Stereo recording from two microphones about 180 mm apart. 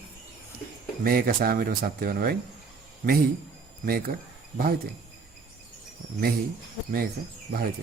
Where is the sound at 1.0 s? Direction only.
55° right (ahead or behind).